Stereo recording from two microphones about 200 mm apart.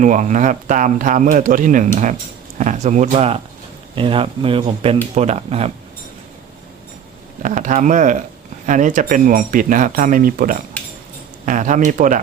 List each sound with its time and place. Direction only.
0.0 s speech: 40° right (ahead or behind)
7.4 s speech: 40° right (ahead or behind)